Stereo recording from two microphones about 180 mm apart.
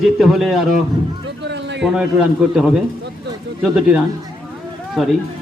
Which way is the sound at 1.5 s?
75° right (ahead or behind).